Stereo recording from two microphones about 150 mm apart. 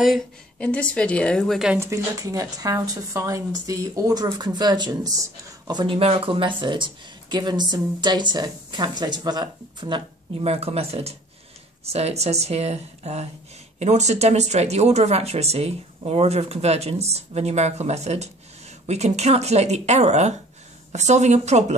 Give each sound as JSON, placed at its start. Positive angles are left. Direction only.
{"t": 0.0, "sound": "a woman's voice", "side_deg": 5}
{"t": 1.8, "sound": "speech", "side_deg": -20}